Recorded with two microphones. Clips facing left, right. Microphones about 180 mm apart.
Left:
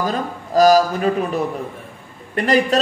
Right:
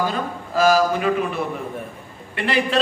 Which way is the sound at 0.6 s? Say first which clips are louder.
Left 4 dB; 40° left (ahead or behind).